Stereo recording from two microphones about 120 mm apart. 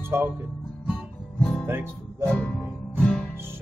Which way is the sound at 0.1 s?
20° right (ahead or behind).